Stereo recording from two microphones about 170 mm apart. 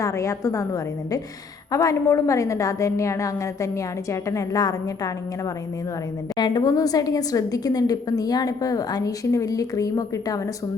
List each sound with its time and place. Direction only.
0.0 s a woman's voice: 20° left (ahead or behind)
6.3 s a woman's voice: 25° left (ahead or behind)